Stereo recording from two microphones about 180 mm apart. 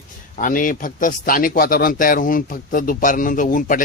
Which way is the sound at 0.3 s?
45° left (ahead or behind).